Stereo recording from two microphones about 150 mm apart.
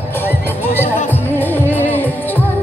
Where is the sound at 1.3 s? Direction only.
15° left (ahead or behind).